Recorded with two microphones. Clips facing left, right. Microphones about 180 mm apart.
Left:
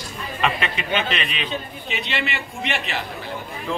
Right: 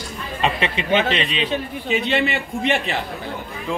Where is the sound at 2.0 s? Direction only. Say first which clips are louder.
Right 5 dB; 50° right (ahead or behind).